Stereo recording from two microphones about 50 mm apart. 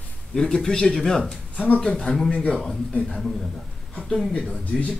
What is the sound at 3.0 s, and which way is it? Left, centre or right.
Speech, centre.